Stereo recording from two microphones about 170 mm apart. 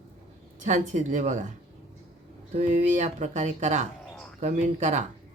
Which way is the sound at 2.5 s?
45° right (ahead or behind).